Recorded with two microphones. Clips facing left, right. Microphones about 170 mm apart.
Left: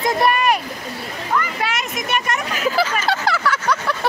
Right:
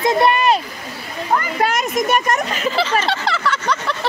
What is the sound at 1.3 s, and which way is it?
Children playing, 40° right (ahead or behind).